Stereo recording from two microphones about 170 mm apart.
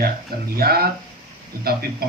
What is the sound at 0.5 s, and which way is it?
Speech, 65° right (ahead or behind).